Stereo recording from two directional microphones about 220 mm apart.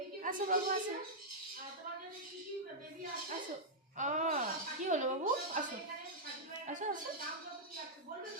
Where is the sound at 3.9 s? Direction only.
35° right (ahead or behind).